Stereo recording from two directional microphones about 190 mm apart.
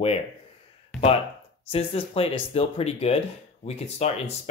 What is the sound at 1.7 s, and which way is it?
Speech, 30° left (ahead or behind).